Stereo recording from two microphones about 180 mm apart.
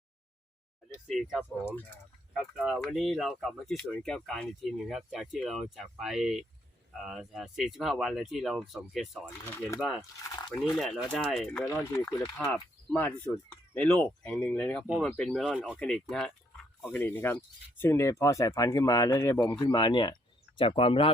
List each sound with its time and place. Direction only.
1.1 s speech: 5° right (ahead or behind)
9.5 s speech: 15° left (ahead or behind)
10.8 s speech: centre (ahead or behind)
11.9 s speech: 15° left (ahead or behind)